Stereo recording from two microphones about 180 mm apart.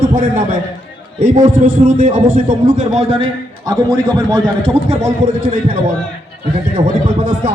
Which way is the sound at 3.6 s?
25° right (ahead or behind).